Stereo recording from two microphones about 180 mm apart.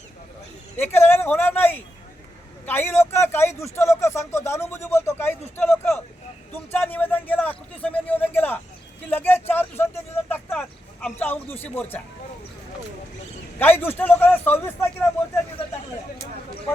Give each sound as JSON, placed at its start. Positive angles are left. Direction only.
{"t": 0.8, "sound": "speech", "side_deg": 10}
{"t": 13.6, "sound": "speech", "side_deg": 10}